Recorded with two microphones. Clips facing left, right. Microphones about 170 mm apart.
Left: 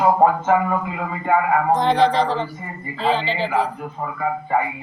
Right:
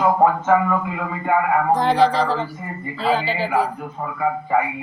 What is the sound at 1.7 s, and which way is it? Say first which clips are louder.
Speech: even; 10° right (ahead or behind).